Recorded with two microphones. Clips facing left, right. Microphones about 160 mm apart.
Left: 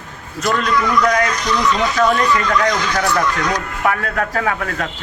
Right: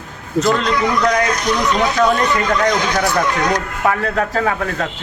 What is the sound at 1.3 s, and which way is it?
Speech, 60° right (ahead or behind).